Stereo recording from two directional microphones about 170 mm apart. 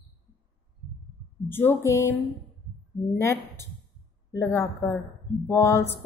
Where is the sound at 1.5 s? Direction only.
15° left (ahead or behind).